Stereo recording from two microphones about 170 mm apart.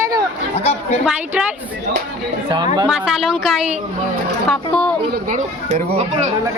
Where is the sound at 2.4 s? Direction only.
25° right (ahead or behind).